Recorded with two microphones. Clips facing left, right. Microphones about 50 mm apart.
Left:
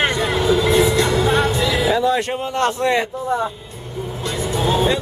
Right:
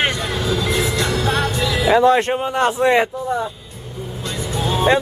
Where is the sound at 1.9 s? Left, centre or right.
Right.